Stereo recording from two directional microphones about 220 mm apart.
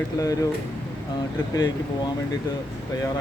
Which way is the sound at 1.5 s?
15° left (ahead or behind).